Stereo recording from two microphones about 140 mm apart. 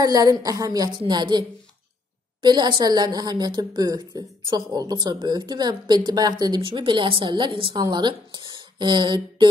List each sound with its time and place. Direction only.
0.0 s a woman's voice: 25° right (ahead or behind)
2.4 s a woman's voice: 30° right (ahead or behind)